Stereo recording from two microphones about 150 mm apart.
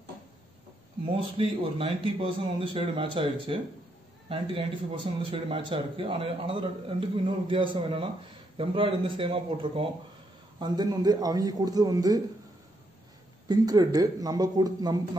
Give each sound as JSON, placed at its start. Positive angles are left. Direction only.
{"t": 1.0, "sound": "speech", "side_deg": -40}
{"t": 10.6, "sound": "a man's voice", "side_deg": -25}
{"t": 13.5, "sound": "a man's voice", "side_deg": -25}